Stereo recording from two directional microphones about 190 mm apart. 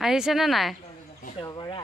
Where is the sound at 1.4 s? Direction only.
25° left (ahead or behind).